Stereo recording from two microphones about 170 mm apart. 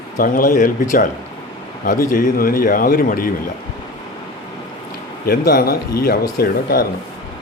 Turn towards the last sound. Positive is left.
turn(degrees=60)  # may be behind; listen again after turning